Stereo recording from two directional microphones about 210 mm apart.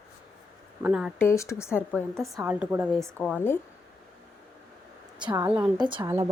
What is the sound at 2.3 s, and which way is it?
Speech, 5° right (ahead or behind).